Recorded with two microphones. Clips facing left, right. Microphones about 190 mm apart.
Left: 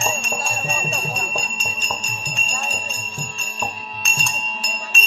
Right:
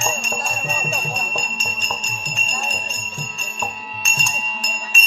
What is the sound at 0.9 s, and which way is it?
Jingle bell, centre (ahead or behind).